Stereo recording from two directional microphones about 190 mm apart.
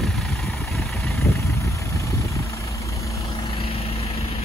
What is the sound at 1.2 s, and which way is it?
Vehicle, 15° left (ahead or behind).